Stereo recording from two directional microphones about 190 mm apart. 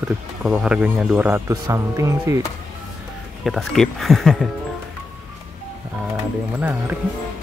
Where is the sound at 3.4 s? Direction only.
Centre (ahead or behind).